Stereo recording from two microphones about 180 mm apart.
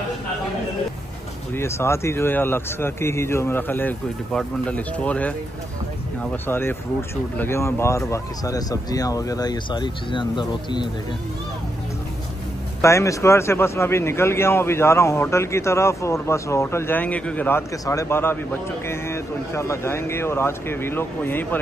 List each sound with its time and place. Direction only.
1.5 s a man's voice: 15° left (ahead or behind)
6.3 s speech: 10° left (ahead or behind)
12.8 s a man's voice: 15° left (ahead or behind)